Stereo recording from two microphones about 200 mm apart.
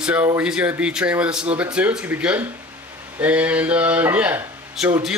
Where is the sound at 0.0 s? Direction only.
5° right (ahead or behind).